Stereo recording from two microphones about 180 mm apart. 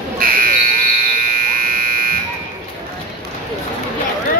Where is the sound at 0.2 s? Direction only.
50° right (ahead or behind).